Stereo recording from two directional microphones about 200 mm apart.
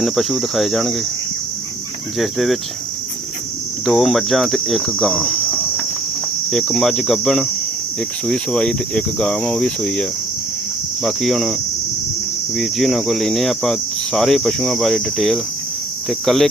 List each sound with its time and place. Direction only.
0.0 s cricket: centre (ahead or behind)
2.1 s cricket: centre (ahead or behind)
3.8 s cricket: centre (ahead or behind)
6.5 s cricket: centre (ahead or behind)
12.5 s cricket: centre (ahead or behind)